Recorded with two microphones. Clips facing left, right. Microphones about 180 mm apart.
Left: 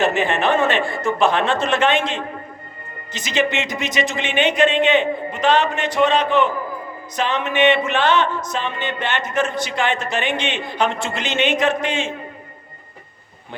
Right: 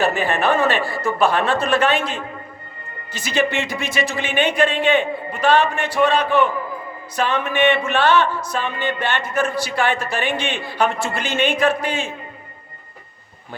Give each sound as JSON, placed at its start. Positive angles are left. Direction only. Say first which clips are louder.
{"t": 0.0, "sound": "speech", "louder": "left 1 dB", "side_deg": 20}